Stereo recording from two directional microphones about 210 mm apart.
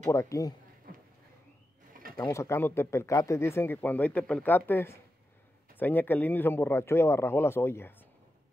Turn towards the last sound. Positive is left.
turn(degrees=10)  # may be behind; listen again after turning